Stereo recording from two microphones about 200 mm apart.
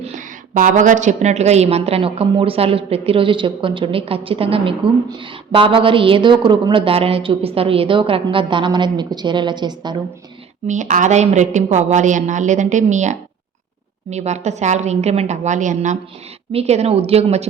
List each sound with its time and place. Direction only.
0.0 s a woman's voice: 40° right (ahead or behind); by 10.0 s 20° right (ahead or behind)
10.7 s a woman's voice: 35° right (ahead or behind)